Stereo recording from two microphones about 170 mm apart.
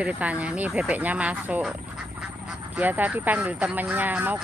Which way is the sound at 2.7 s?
10° right (ahead or behind).